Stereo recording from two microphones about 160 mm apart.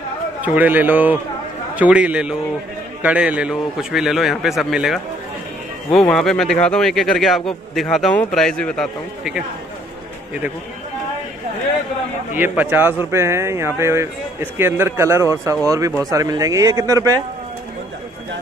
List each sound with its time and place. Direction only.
0.4 s a man's voice: 10° right (ahead or behind)
12.4 s a man's voice: 10° right (ahead or behind)